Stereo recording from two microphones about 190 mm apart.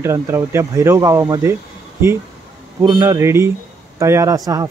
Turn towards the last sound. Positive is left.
turn(degrees=-20)  # may be behind; listen again after turning